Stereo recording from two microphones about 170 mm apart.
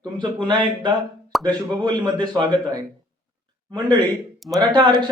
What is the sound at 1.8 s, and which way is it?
A man's voice, 25° right (ahead or behind).